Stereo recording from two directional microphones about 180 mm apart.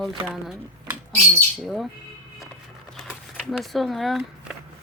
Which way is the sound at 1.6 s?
Centre (ahead or behind).